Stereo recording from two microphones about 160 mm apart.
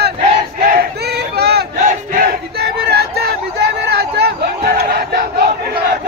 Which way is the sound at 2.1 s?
85° right.